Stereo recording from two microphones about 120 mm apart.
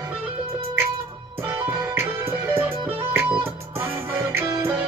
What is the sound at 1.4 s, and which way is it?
Music, 15° right (ahead or behind).